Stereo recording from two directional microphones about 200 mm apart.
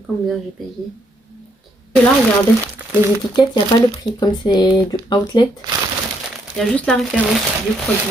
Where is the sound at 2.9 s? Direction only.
10° right (ahead or behind).